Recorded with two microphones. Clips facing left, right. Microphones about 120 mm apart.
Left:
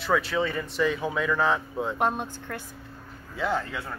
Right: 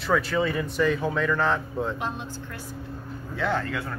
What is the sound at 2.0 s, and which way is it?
Speech, 50° left (ahead or behind).